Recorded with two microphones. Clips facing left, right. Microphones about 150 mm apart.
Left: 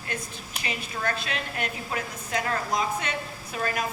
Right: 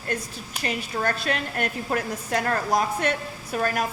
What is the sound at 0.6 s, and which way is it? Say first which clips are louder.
A woman's voice: right 5 dB; 40° right (ahead or behind).